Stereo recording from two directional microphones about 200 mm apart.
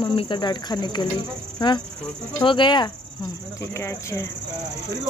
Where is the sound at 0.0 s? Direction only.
25° left (ahead or behind).